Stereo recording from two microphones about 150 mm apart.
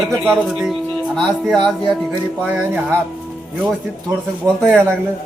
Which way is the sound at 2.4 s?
10° right (ahead or behind).